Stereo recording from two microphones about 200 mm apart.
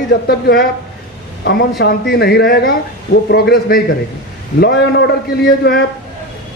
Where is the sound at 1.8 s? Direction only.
55° left (ahead or behind).